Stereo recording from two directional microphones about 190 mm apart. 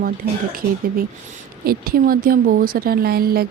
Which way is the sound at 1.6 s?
50° right (ahead or behind).